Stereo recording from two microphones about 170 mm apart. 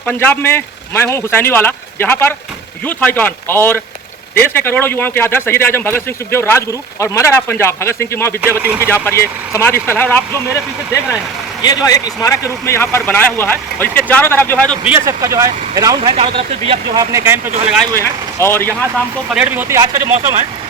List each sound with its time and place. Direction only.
0.0 s a man's voice: 10° left (ahead or behind)
8.6 s speech: 10° right (ahead or behind)
8.9 s a man's voice: 15° left (ahead or behind)
11.6 s a man's voice: 20° left (ahead or behind)
14.8 s speech: 15° right (ahead or behind)
16.1 s speech: 35° right (ahead or behind)
17.0 s speech: 20° right (ahead or behind)
17.9 s a man's voice: 15° left (ahead or behind)
19.3 s speech: 10° right (ahead or behind)